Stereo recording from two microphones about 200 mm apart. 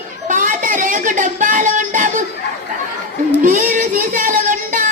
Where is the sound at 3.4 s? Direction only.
40° right (ahead or behind).